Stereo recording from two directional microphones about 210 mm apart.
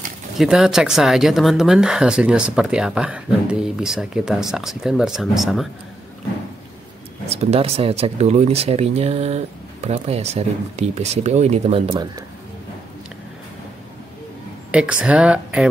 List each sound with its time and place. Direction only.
0.4 s speech: centre (ahead or behind)
7.2 s speech: 30° right (ahead or behind)
14.7 s speech: 5° right (ahead or behind)